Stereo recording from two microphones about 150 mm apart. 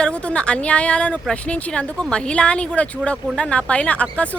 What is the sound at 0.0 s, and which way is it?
A woman's voice, 5° left (ahead or behind).